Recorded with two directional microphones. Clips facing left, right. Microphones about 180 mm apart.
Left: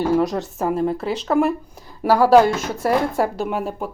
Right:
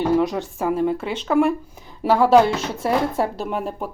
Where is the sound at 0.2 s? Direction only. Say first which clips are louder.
Left 1 dB; centre (ahead or behind).